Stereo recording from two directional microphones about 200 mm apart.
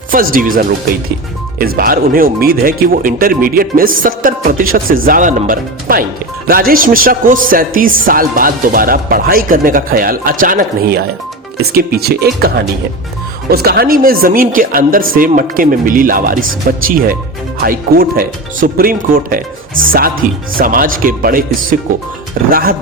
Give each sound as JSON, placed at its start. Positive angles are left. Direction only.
{"t": 0.1, "sound": "speech", "side_deg": -45}
{"t": 13.5, "sound": "speech", "side_deg": -50}